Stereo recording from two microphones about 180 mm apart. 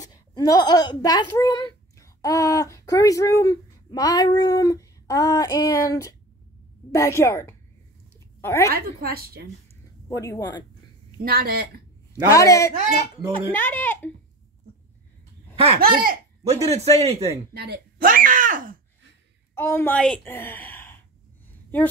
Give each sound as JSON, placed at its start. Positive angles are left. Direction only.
{"t": 0.0, "sound": "a woman's voice", "side_deg": 20}
{"t": 8.7, "sound": "a woman's voice", "side_deg": -55}
{"t": 10.0, "sound": "speech", "side_deg": 20}
{"t": 11.2, "sound": "a woman's voice", "side_deg": -60}
{"t": 12.1, "sound": "a woman's voice", "side_deg": 15}
{"t": 15.5, "sound": "speech", "side_deg": -30}
{"t": 15.8, "sound": "speech", "side_deg": -55}
{"t": 16.4, "sound": "a man's voice", "side_deg": -35}
{"t": 17.6, "sound": "speech", "side_deg": -60}
{"t": 19.5, "sound": "a woman's voice", "side_deg": 10}